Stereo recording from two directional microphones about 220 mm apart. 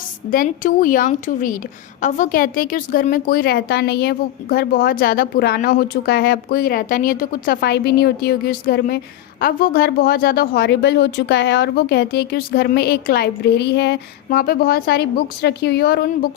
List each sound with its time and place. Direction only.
0.3 s a woman's voice: 40° left (ahead or behind)